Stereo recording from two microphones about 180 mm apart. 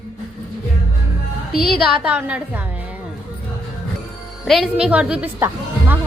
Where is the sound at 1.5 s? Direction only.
Centre (ahead or behind).